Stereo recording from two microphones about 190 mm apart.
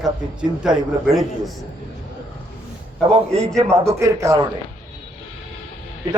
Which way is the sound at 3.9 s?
15° right (ahead or behind).